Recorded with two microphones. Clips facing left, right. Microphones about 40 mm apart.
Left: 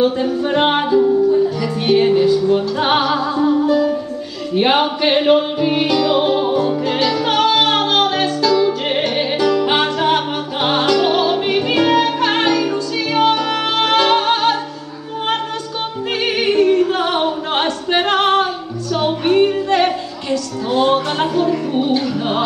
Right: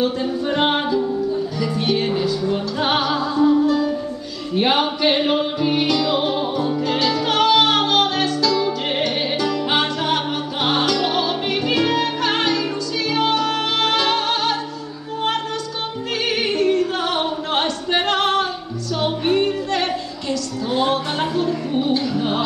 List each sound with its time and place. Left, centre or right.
0.4 s music: centre
16.6 s singing: centre
18.9 s music: centre
20.9 s speech: centre
21.7 s music: centre